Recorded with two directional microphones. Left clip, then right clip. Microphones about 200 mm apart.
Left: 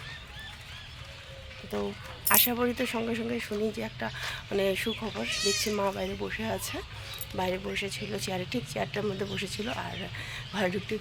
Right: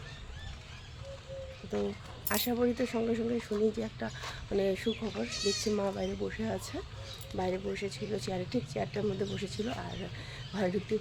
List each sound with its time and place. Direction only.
1.7 s speech: 5° left (ahead or behind)
5.4 s speech: 25° right (ahead or behind)
5.7 s speech: centre (ahead or behind)